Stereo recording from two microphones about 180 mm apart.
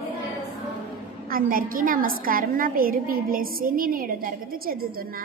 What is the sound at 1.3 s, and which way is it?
A woman's voice, 50° right (ahead or behind).